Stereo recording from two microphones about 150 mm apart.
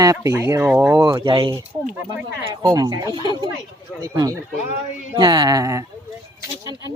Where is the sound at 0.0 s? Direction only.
20° right (ahead or behind).